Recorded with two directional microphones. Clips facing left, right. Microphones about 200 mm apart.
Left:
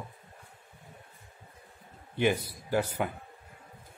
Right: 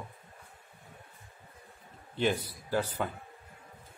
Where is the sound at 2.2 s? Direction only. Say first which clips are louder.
Left 2 dB; 15° left (ahead or behind).